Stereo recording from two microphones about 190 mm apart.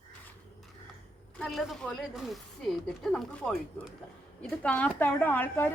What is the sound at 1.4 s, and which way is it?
A woman's voice, centre (ahead or behind).